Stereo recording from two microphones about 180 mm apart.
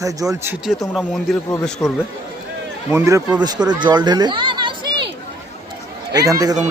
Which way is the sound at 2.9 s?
15° right (ahead or behind).